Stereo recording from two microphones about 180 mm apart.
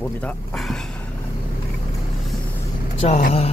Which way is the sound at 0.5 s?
Centre (ahead or behind).